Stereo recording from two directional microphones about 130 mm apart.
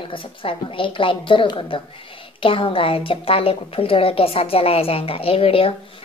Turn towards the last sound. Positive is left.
turn(degrees=45)  # may be behind; listen again after turning